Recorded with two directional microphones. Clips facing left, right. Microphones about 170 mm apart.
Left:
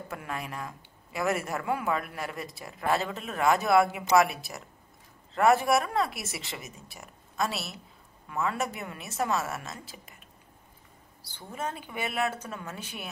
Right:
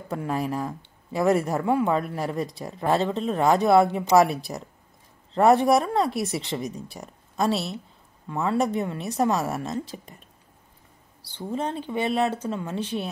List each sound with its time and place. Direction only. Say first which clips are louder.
0.1 s speech: right 11 dB; 30° right (ahead or behind)
6.4 s a woman's voice: right 11 dB; centre (ahead or behind)
7.0 s a woman's voice: right 4 dB; 35° right (ahead or behind)
11.3 s speech: right 7 dB; 30° right (ahead or behind)